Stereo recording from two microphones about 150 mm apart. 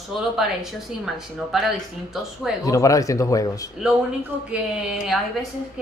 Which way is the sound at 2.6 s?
20° left (ahead or behind).